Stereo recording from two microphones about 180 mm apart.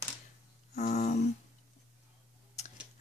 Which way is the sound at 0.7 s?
40° left (ahead or behind).